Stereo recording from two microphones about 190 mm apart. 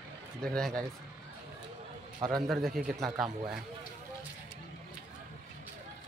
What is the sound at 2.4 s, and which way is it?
Speech, centre (ahead or behind).